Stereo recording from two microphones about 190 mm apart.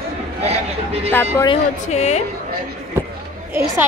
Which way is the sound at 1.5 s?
35° left (ahead or behind).